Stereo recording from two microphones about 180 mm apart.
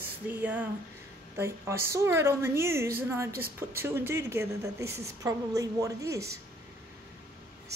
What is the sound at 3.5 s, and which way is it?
A woman's voice, 15° right (ahead or behind).